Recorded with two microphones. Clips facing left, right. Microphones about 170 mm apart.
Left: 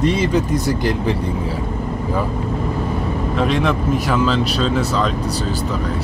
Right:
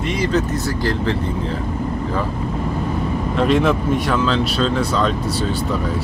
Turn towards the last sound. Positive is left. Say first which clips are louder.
# even
turn(degrees=5)  # may be behind; listen again after turning